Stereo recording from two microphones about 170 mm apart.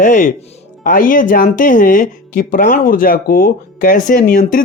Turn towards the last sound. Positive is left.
turn(degrees=50)  # may be behind; listen again after turning